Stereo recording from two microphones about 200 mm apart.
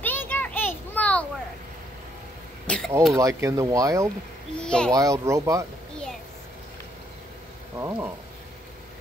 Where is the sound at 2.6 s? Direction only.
5° left (ahead or behind).